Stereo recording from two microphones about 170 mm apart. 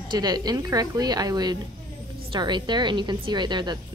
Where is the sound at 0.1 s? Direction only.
25° right (ahead or behind).